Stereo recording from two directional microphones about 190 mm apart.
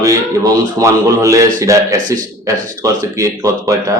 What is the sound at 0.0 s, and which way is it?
A man's voice, 15° right (ahead or behind).